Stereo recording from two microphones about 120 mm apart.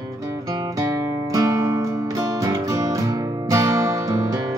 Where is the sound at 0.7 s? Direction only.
30° right (ahead or behind).